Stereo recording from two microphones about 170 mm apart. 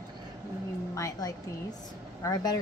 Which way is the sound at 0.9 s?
20° left (ahead or behind).